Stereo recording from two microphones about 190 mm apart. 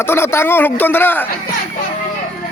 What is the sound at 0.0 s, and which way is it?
Speech, 10° left (ahead or behind).